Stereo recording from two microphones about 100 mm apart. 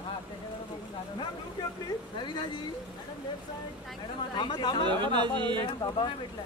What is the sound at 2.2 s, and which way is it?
Speech, 50° left (ahead or behind).